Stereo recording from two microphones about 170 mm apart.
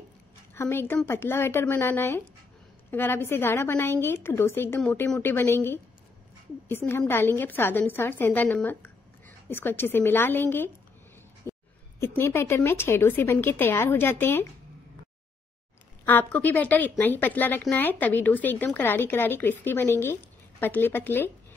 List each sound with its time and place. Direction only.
0.6 s a woman's voice: 15° left (ahead or behind)
6.9 s a woman's voice: 15° left (ahead or behind)
11.4 s a sound: 15° left (ahead or behind)
12.0 s a woman's voice: 15° left (ahead or behind)
16.1 s a woman's voice: 10° left (ahead or behind)